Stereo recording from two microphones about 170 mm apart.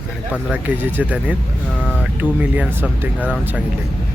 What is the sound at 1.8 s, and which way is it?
Speech, 10° left (ahead or behind).